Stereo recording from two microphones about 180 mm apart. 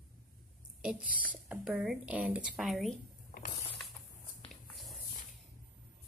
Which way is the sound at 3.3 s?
50° left (ahead or behind).